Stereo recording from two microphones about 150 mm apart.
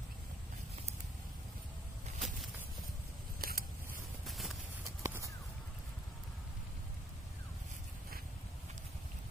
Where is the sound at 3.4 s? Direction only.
90° right.